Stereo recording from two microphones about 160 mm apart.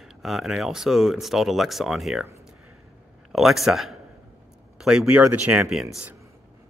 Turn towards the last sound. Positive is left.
turn(degrees=-5)  # may be behind; listen again after turning